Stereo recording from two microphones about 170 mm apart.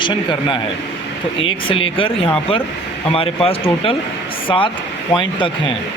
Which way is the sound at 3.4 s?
35° left (ahead or behind).